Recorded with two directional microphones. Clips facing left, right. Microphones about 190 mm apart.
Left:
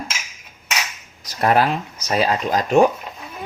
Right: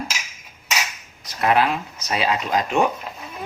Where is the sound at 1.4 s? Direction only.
40° left (ahead or behind).